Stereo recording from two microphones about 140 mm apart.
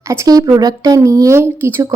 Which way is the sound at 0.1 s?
25° right (ahead or behind).